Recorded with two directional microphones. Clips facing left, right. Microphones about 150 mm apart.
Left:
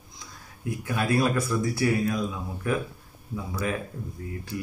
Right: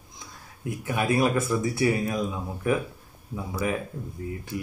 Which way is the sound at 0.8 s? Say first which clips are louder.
Right 1 dB; 20° right (ahead or behind).